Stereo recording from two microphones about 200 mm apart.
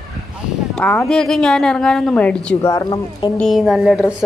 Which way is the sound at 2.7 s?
20° left (ahead or behind).